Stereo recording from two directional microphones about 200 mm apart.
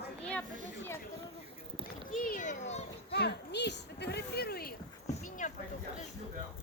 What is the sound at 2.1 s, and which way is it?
Speech, 45° left (ahead or behind).